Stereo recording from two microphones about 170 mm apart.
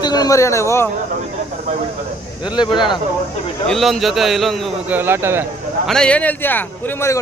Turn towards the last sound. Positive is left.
turn(degrees=15)  # may be behind; listen again after turning